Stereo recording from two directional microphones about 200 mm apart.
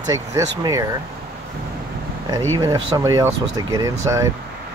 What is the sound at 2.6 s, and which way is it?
Speech, 20° right (ahead or behind).